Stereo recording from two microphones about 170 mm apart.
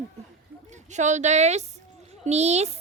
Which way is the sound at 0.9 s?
45° right (ahead or behind).